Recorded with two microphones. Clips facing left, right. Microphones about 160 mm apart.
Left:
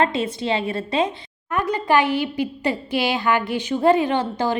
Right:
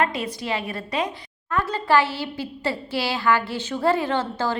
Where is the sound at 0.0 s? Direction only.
25° left (ahead or behind).